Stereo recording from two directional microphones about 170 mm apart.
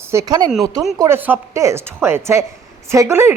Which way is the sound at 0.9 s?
15° right (ahead or behind).